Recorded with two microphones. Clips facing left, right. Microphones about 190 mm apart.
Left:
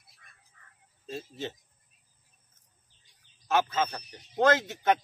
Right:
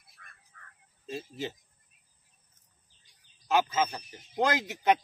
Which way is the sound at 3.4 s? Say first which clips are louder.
Even; 15° right (ahead or behind).